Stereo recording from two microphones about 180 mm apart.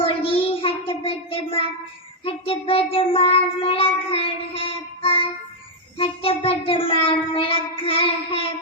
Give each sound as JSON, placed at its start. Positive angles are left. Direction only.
{"t": 0.0, "sound": "child singing", "side_deg": 30}